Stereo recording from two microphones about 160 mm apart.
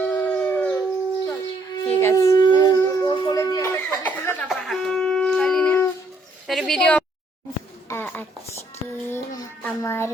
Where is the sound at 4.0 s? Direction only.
10° left (ahead or behind).